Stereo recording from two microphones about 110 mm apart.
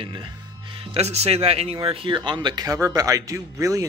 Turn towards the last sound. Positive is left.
turn(degrees=-30)  # may be behind; listen again after turning